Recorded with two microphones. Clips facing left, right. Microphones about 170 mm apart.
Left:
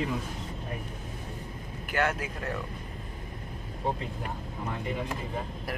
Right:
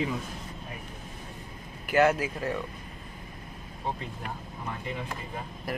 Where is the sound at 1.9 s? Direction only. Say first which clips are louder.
Right 6 dB; 5° right (ahead or behind).